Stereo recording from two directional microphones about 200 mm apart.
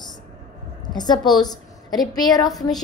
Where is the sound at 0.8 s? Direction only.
20° left (ahead or behind).